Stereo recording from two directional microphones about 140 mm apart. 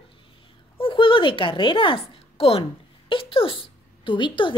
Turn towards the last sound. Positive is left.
turn(degrees=35)  # may be behind; listen again after turning